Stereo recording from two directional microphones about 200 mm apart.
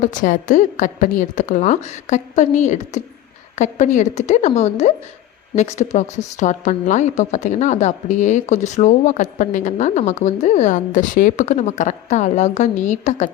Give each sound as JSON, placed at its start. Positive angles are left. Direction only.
{"t": 0.0, "sound": "a woman's voice", "side_deg": 40}